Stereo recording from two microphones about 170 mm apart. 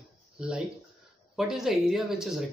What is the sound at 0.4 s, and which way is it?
Speech, 5° right (ahead or behind).